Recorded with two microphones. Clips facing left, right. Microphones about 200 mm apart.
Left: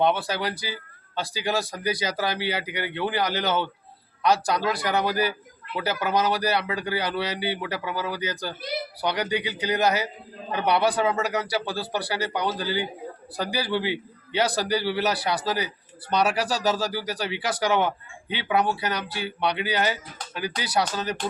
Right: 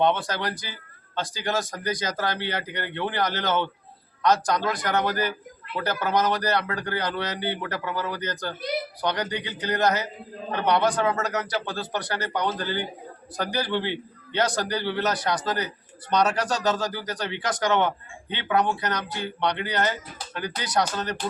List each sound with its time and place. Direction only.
0.0 s a man's voice: 5° left (ahead or behind)